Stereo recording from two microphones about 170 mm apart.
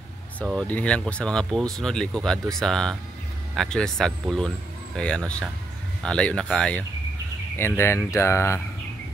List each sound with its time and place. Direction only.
0.5 s speech: 5° left (ahead or behind)